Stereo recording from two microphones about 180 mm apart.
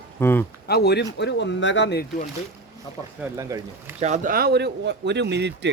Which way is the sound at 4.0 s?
45° right (ahead or behind).